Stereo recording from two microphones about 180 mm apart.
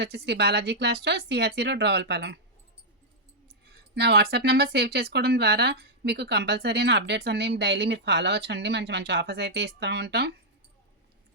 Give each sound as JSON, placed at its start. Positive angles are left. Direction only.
{"t": 0.0, "sound": "speech", "side_deg": -70}
{"t": 3.7, "sound": "speech", "side_deg": -65}